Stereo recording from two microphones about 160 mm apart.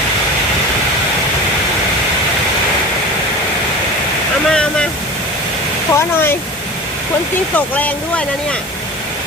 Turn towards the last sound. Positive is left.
turn(degrees=10)  # may be behind; listen again after turning